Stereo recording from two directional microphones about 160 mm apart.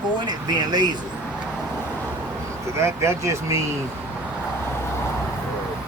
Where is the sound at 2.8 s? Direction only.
20° right (ahead or behind).